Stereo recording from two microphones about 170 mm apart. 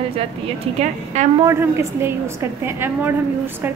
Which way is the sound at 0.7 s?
40° right (ahead or behind).